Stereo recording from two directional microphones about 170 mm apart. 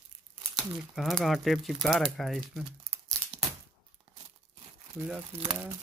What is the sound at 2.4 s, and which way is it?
Speech, 10° right (ahead or behind).